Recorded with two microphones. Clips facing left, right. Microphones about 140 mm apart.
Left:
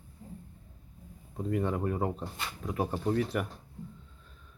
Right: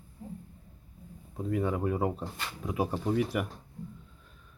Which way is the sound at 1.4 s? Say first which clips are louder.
Right 1 dB; centre (ahead or behind).